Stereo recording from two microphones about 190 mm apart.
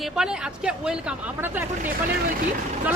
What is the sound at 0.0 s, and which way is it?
Speech, 5° right (ahead or behind).